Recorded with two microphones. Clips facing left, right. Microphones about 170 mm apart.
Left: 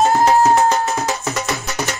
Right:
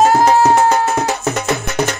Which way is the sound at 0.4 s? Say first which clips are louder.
Right 2 dB; 65° right (ahead or behind).